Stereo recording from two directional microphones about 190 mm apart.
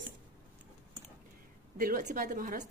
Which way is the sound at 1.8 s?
45° right (ahead or behind).